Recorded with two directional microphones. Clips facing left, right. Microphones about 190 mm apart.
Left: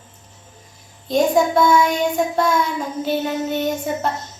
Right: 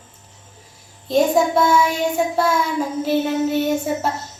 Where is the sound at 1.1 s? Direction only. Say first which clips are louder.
Even; 5° right (ahead or behind).